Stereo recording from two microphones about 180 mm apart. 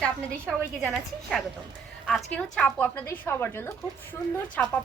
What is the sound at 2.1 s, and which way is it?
A woman's voice, 5° left (ahead or behind).